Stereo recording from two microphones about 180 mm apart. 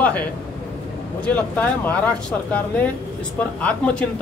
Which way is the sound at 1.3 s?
10° left (ahead or behind).